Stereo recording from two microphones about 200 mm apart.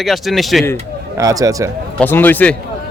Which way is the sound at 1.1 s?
15° right (ahead or behind).